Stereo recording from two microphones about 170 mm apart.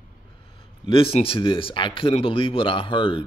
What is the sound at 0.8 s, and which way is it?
Speech, 30° left (ahead or behind).